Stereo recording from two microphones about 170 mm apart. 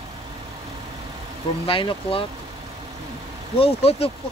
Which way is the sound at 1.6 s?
30° left (ahead or behind).